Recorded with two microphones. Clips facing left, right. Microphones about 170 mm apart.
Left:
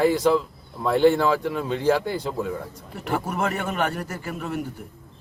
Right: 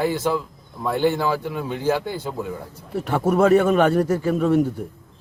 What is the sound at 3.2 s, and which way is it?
A man's voice, 90° right.